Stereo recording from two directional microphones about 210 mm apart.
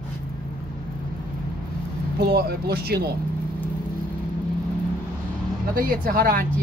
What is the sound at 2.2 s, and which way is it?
Speech, 50° right (ahead or behind).